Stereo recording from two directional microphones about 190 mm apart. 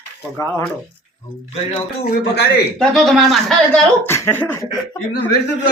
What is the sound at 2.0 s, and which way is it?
Speech, 60° left (ahead or behind).